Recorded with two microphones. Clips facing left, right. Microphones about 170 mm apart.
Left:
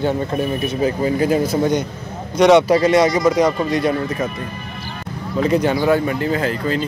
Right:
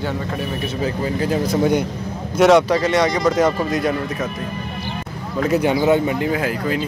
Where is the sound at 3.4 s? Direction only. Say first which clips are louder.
Left 1 dB; centre (ahead or behind).